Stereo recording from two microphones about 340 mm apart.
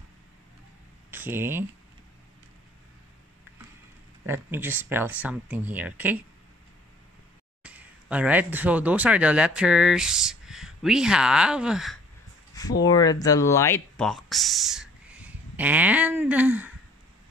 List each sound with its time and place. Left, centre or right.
1.1 s speech: centre
4.3 s speech: centre
7.6 s speech: centre
12.8 s speech: centre